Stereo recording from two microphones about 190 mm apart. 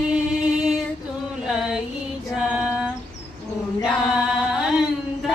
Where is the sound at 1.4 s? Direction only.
5° right (ahead or behind).